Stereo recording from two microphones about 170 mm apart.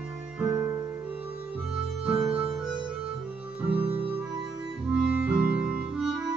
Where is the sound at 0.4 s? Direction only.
10° right (ahead or behind).